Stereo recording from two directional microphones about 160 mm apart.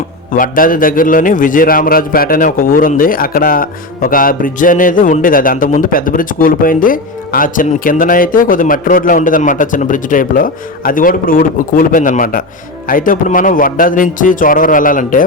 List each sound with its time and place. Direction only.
0.3 s a man's voice: 60° left (ahead or behind)